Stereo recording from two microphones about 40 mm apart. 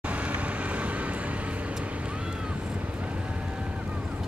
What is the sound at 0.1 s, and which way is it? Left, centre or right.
Vehicle, right.